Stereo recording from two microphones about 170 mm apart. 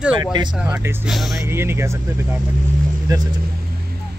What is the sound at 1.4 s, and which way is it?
Speech, 15° right (ahead or behind).